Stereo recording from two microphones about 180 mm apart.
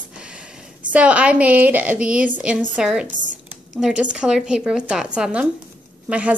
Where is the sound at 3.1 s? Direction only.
45° right (ahead or behind).